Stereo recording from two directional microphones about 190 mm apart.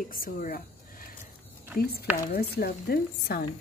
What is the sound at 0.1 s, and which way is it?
Speech, 50° left (ahead or behind).